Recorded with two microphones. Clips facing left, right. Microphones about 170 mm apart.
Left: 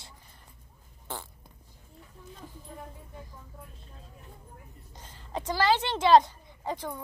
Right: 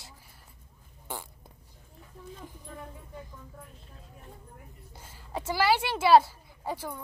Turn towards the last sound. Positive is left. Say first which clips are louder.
# left 1 dB
turn(degrees=-10)  # may be behind; listen again after turning